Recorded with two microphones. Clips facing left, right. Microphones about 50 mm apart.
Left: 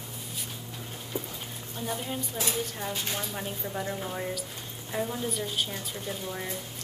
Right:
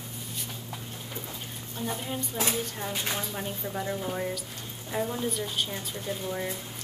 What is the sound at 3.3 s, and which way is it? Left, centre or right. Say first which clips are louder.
A woman's voice: right 1 dB; centre.